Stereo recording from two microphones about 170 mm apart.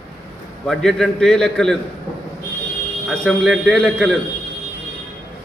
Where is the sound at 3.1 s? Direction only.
Centre (ahead or behind).